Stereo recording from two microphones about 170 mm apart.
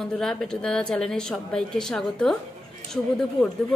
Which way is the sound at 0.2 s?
5° left (ahead or behind).